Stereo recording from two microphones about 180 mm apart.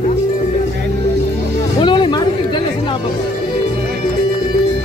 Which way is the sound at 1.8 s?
25° left (ahead or behind).